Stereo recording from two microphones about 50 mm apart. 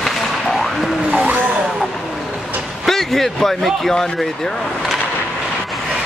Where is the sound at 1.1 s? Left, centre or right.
Right.